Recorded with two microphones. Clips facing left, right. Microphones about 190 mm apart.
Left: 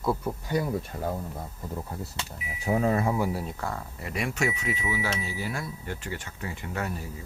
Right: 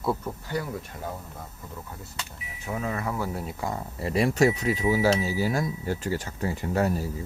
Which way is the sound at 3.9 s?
30° right (ahead or behind).